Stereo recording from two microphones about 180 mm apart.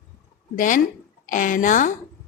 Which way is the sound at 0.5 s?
45° left (ahead or behind).